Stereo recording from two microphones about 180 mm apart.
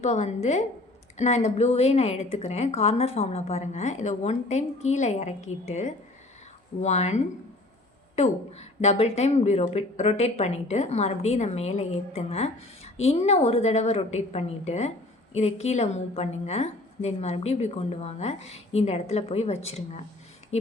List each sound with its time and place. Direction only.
0.0 s a woman's voice: 40° left (ahead or behind)